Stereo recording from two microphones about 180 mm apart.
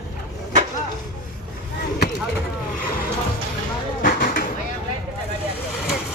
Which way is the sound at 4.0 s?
50° left (ahead or behind).